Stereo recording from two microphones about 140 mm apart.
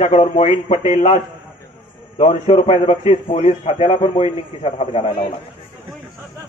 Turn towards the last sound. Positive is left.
turn(degrees=45)  # may be behind; listen again after turning